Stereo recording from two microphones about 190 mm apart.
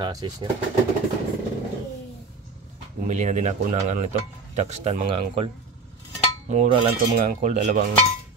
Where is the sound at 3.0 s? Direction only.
40° right (ahead or behind).